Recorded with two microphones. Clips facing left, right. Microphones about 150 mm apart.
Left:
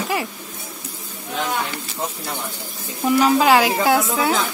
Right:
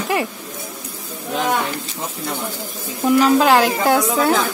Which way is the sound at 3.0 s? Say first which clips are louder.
Right 2 dB; centre (ahead or behind).